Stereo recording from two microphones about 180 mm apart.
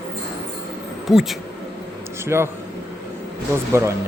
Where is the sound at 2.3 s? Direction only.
15° right (ahead or behind).